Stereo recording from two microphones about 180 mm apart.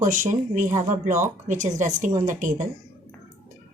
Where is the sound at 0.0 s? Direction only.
45° right (ahead or behind).